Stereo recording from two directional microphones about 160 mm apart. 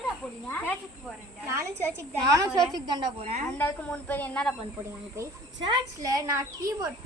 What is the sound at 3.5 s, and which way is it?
Speech, 10° left (ahead or behind).